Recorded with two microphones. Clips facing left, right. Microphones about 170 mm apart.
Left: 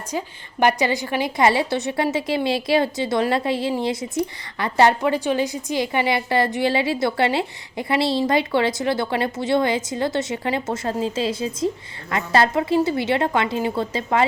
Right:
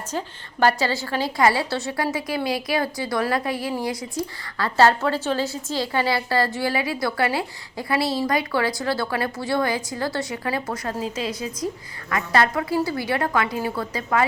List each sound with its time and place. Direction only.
0.1 s a woman's voice: 15° left (ahead or behind)